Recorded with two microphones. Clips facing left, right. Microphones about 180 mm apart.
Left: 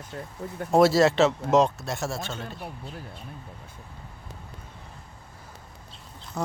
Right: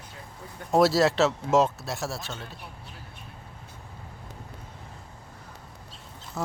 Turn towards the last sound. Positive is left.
turn(degrees=0)  # may be behind; listen again after turning